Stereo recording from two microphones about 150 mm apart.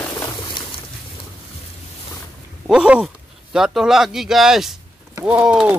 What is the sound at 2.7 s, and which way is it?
Speech, 5° right (ahead or behind).